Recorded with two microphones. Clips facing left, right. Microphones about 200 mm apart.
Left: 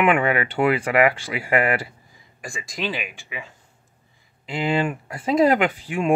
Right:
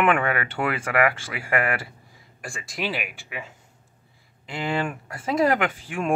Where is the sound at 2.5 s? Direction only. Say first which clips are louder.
Left 1 dB; 5° right (ahead or behind).